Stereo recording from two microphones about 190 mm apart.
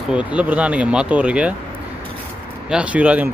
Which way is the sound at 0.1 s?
5° right (ahead or behind).